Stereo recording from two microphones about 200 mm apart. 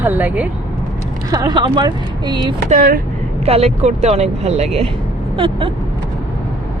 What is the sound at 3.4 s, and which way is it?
Speech, 30° right (ahead or behind).